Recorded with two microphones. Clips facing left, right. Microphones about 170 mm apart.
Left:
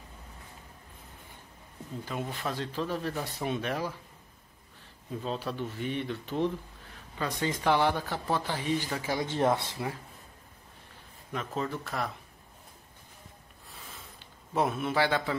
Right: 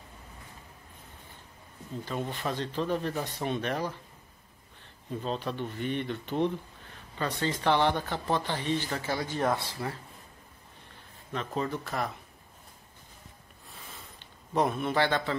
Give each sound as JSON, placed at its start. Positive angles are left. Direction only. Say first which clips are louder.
{"t": 2.0, "sound": "speech", "louder": "right 2 dB", "side_deg": 5}
{"t": 5.1, "sound": "speech", "louder": "right 1 dB", "side_deg": 5}
{"t": 9.2, "sound": "speech", "louder": "left 4 dB", "side_deg": 25}
{"t": 11.3, "sound": "speech", "louder": "right 1 dB", "side_deg": 0}
{"t": 13.7, "sound": "a sound", "louder": "even", "side_deg": 0}